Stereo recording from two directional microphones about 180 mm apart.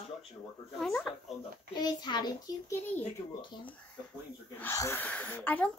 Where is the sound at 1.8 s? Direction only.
20° left (ahead or behind).